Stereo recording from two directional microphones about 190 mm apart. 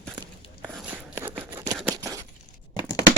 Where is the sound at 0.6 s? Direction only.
5° right (ahead or behind).